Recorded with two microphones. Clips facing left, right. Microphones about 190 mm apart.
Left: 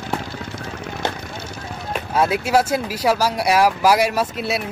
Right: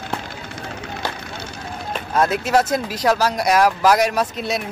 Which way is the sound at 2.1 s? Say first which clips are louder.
Even; 10° left (ahead or behind).